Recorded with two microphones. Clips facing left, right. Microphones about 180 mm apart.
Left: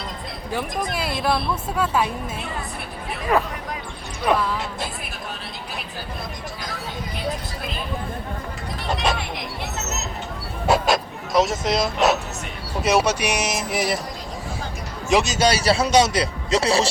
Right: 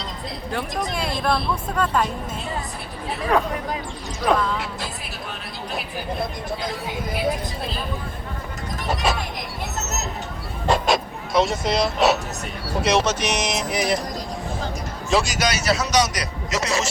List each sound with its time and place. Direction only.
0.9 s speech: 5° left (ahead or behind)
3.3 s speech: 5° left (ahead or behind)
10.7 s dog: centre (ahead or behind)
12.8 s speech: 5° left (ahead or behind)
15.1 s a man's voice: 20° left (ahead or behind)